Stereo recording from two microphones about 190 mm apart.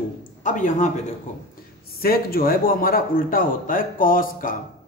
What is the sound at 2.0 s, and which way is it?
A man's voice, 50° left (ahead or behind).